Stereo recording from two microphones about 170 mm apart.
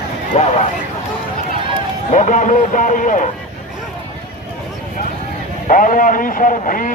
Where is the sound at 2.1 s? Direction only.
50° left (ahead or behind).